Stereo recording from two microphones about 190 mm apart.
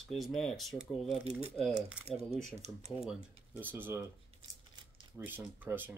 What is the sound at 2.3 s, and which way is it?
Speech, 35° right (ahead or behind).